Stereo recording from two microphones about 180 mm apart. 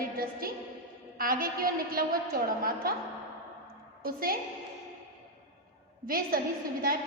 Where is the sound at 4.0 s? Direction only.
55° right (ahead or behind).